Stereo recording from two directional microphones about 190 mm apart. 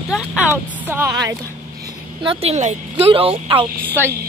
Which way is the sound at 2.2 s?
30° right (ahead or behind).